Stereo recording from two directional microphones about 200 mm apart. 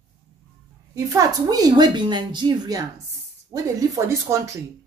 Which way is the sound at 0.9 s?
15° right (ahead or behind).